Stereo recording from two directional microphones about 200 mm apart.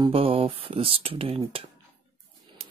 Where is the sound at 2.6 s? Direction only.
30° right (ahead or behind).